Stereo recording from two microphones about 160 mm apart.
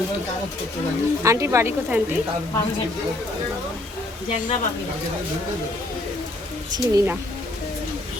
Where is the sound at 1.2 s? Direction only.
20° right (ahead or behind).